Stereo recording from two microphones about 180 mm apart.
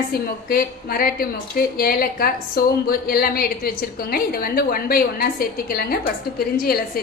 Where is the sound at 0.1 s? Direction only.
55° left (ahead or behind).